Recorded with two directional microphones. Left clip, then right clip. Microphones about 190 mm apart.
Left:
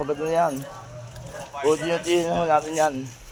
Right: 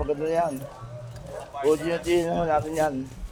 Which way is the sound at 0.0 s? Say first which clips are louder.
Left 2 dB; 25° left (ahead or behind).